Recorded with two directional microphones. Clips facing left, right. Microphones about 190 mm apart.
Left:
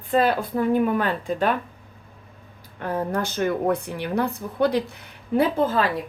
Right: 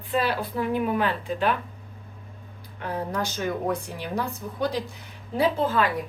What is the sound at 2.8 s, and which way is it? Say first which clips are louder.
A woman's voice: left 4 dB; 50° left (ahead or behind).